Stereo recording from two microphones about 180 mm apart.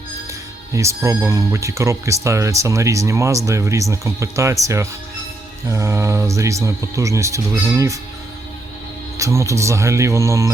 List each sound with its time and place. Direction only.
0.7 s speech: 15° right (ahead or behind)
9.1 s speech: 15° right (ahead or behind)